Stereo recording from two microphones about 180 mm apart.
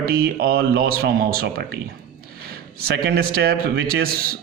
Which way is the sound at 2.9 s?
60° right (ahead or behind).